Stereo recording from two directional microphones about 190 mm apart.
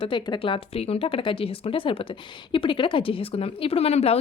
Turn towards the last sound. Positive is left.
turn(degrees=35)  # may be behind; listen again after turning